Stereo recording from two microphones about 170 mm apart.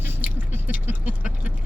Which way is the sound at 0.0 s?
10° right (ahead or behind).